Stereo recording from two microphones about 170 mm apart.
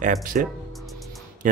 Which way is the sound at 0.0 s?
50° right (ahead or behind).